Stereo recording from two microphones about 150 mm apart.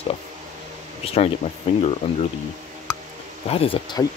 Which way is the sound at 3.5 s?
40° left (ahead or behind).